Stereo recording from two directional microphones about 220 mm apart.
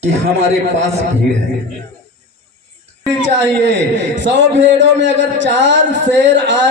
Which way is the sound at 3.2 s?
55° right (ahead or behind).